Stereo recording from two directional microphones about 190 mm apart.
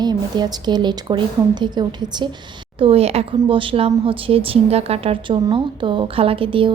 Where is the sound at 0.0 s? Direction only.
20° right (ahead or behind).